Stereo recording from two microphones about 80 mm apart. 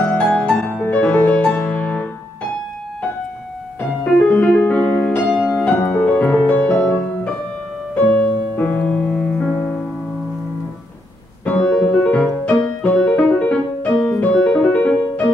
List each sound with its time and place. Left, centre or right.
0.0 s music: centre
4.0 s piano: centre
5.5 s music: centre
11.4 s keyboard: centre
11.7 s music: centre